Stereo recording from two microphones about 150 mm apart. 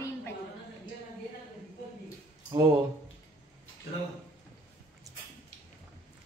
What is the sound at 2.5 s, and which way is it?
Speech, 25° right (ahead or behind).